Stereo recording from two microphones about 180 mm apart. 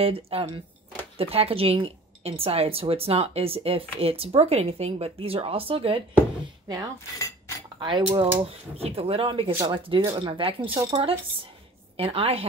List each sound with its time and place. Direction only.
0.0 s a woman's voice: 30° right (ahead or behind)
7.2 s cutlery: 20° left (ahead or behind)
7.8 s a woman's voice: 30° right (ahead or behind)